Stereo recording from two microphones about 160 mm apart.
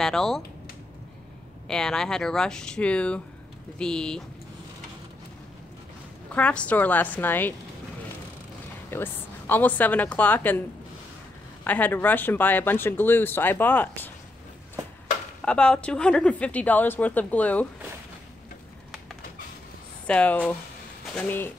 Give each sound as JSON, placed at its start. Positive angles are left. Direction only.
{"t": 0.0, "sound": "speech", "side_deg": 0}
{"t": 1.7, "sound": "speech", "side_deg": 5}
{"t": 6.3, "sound": "speech", "side_deg": 5}
{"t": 8.9, "sound": "speech", "side_deg": 10}
{"t": 11.6, "sound": "speech", "side_deg": 10}
{"t": 15.4, "sound": "speech", "side_deg": 5}
{"t": 20.1, "sound": "speech", "side_deg": 10}